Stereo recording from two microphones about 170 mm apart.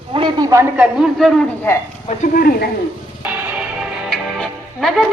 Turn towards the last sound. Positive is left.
turn(degrees=0)  # may be behind; listen again after turning